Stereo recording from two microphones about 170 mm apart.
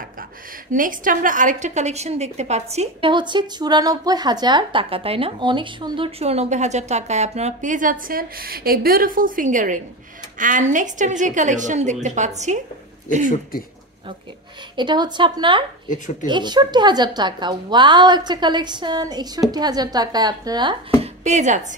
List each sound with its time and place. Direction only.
0.7 s a woman's voice: 50° right (ahead or behind)
14.8 s a woman's voice: 25° right (ahead or behind)
21.0 s a woman's voice: 40° right (ahead or behind)